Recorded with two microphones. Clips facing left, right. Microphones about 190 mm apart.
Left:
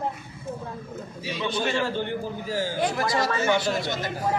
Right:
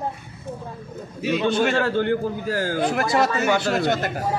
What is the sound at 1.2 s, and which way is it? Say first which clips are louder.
Speech: right 7 dB; 55° right (ahead or behind).